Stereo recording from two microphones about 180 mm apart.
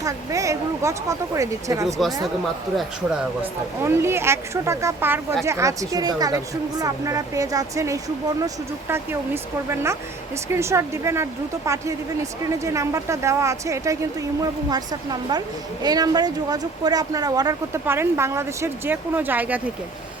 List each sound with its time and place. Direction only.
0.0 s speech: 20° right (ahead or behind)
3.8 s a woman's voice: 15° right (ahead or behind)